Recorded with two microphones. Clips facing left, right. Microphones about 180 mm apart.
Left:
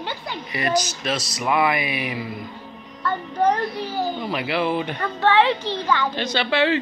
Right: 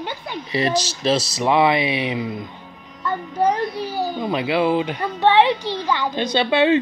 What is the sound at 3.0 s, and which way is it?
A child's voice, 10° right (ahead or behind).